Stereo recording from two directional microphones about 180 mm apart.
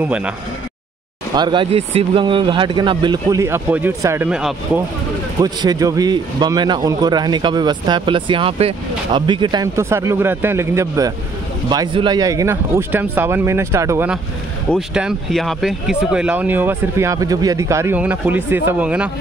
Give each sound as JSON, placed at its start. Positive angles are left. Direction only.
{"t": 0.0, "sound": "speech", "side_deg": -5}
{"t": 1.3, "sound": "a man's voice", "side_deg": -25}
{"t": 5.4, "sound": "a man's voice", "side_deg": -20}
{"t": 15.0, "sound": "speech", "side_deg": 0}